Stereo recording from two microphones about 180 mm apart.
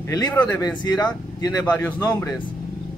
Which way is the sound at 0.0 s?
20° left (ahead or behind).